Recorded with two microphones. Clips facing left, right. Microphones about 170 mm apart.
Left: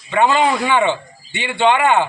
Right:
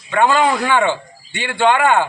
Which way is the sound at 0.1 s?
15° left (ahead or behind).